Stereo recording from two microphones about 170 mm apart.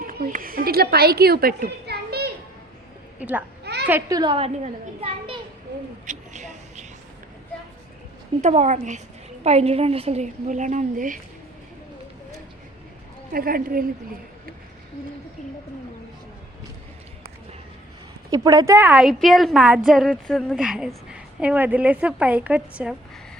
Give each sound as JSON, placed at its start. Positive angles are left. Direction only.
{"t": 0.0, "sound": "a woman's voice", "side_deg": -55}
{"t": 3.2, "sound": "speech", "side_deg": -10}
{"t": 3.6, "sound": "a sound", "side_deg": -75}
{"t": 4.1, "sound": "a woman's voice", "side_deg": -30}
{"t": 6.1, "sound": "a sound", "side_deg": -45}
{"t": 8.4, "sound": "a woman's voice", "side_deg": -45}
{"t": 13.3, "sound": "a woman's voice", "side_deg": -60}
{"t": 18.3, "sound": "a woman's voice", "side_deg": -25}